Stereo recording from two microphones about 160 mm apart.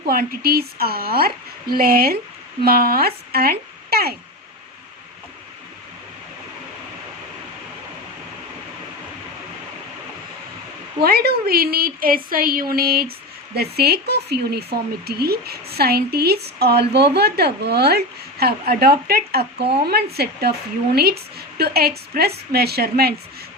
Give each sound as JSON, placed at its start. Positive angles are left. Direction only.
{"t": 0.0, "sound": "a woman's voice", "side_deg": -70}
{"t": 11.0, "sound": "a woman's voice", "side_deg": -75}
{"t": 13.6, "sound": "speech", "side_deg": -80}